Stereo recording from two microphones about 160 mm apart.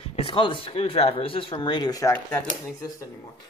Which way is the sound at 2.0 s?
10° left (ahead or behind).